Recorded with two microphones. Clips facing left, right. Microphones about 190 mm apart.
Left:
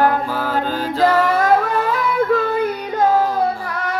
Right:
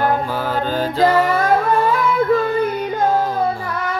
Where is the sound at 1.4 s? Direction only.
25° right (ahead or behind).